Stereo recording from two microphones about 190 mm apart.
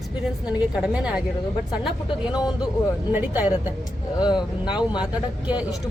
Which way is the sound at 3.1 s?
10° right (ahead or behind).